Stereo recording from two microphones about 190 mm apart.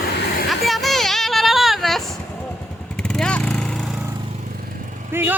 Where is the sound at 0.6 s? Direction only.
Centre (ahead or behind).